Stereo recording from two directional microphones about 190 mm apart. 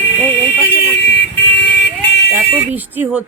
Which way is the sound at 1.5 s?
70° left (ahead or behind).